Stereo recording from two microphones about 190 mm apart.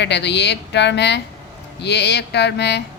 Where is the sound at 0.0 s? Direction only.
65° left (ahead or behind).